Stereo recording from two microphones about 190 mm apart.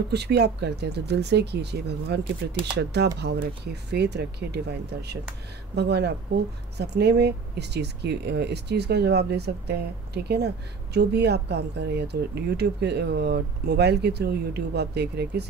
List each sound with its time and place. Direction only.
0.1 s speech: 60° right (ahead or behind)